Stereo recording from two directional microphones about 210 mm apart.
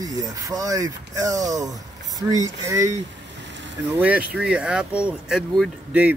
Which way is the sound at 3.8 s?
5° right (ahead or behind).